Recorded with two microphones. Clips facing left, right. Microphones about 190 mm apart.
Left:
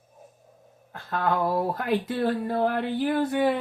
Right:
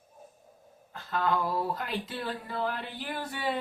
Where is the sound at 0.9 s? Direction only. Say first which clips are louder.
Left 3 dB; 55° left (ahead or behind).